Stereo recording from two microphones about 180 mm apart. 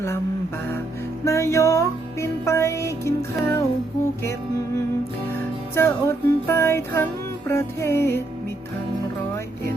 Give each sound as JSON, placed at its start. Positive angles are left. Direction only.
{"t": 1.2, "sound": "music", "side_deg": 15}